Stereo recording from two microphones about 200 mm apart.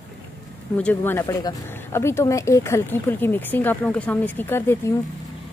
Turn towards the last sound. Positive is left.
turn(degrees=10)  # may be behind; listen again after turning